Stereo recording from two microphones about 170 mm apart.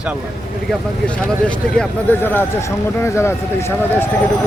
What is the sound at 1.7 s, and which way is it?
Speech, 10° left (ahead or behind).